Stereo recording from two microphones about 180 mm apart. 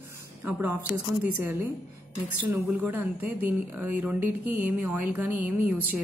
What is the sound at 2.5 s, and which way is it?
A woman's voice, 10° right (ahead or behind).